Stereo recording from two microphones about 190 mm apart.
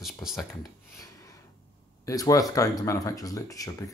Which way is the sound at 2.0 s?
20° left (ahead or behind).